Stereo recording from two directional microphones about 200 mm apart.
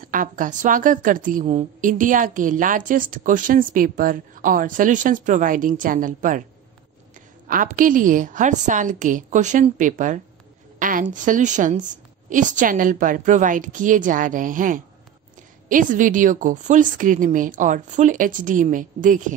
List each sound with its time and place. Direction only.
0.0 s a woman's voice: 40° right (ahead or behind)